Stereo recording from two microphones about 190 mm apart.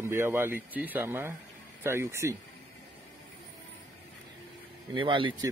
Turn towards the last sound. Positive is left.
turn(degrees=-25)  # may be behind; listen again after turning